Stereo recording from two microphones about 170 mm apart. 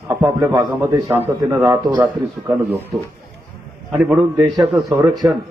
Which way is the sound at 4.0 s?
5° right (ahead or behind).